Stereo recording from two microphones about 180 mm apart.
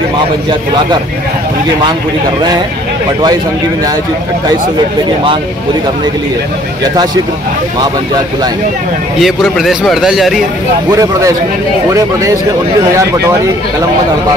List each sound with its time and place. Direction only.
9.2 s a man's voice: centre (ahead or behind)
10.9 s a man's voice: 20° right (ahead or behind)